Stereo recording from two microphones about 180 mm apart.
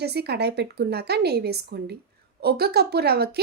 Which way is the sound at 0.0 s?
65° right (ahead or behind).